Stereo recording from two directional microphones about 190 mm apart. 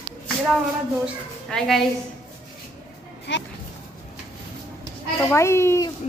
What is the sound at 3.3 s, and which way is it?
Speech, 65° left (ahead or behind).